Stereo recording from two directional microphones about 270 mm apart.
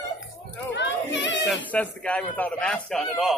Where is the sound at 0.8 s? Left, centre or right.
Left.